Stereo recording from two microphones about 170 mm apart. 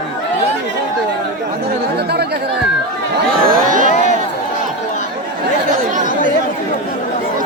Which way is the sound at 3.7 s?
50° right (ahead or behind).